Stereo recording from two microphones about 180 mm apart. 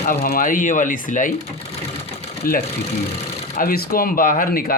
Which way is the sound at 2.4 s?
50° left (ahead or behind).